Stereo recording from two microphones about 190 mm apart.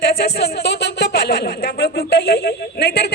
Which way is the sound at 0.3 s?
60° left (ahead or behind).